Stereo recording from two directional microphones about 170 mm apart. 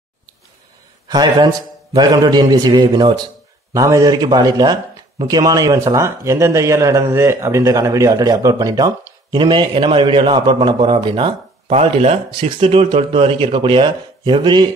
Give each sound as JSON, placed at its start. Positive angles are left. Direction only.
{"t": 1.0, "sound": "a man's voice", "side_deg": -25}